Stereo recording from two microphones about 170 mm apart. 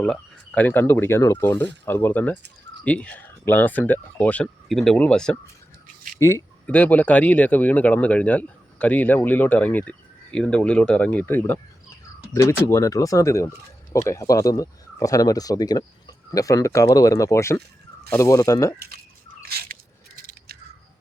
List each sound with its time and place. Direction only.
0.0 s speech: 10° left (ahead or behind)
6.1 s speech: 15° left (ahead or behind)
20.5 s a sound: 65° right (ahead or behind)